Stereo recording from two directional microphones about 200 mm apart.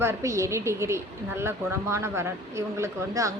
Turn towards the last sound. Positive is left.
turn(degrees=-15)  # may be behind; listen again after turning